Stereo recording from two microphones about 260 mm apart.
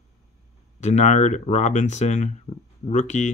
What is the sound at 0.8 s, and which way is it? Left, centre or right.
Speech, left.